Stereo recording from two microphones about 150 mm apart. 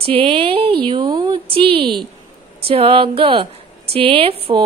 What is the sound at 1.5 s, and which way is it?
A woman's voice, 35° right (ahead or behind).